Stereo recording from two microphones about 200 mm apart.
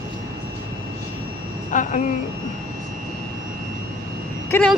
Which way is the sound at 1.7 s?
40° left (ahead or behind).